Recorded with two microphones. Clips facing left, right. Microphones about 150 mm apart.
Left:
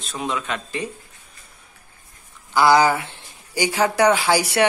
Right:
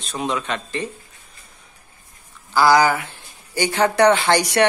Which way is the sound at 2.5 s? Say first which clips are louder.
Even; 20° left (ahead or behind).